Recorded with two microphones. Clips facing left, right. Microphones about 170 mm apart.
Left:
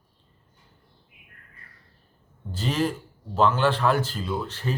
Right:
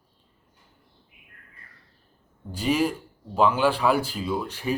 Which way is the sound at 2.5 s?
10° right (ahead or behind).